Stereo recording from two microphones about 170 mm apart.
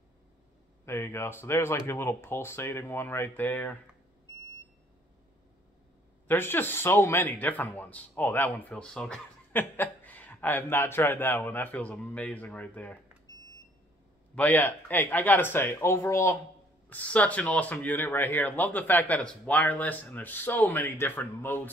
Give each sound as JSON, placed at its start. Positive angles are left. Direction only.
{"t": 0.8, "sound": "speech", "side_deg": 15}
{"t": 6.2, "sound": "speech", "side_deg": 10}
{"t": 13.3, "sound": "smoke detector", "side_deg": 20}
{"t": 14.3, "sound": "speech", "side_deg": 10}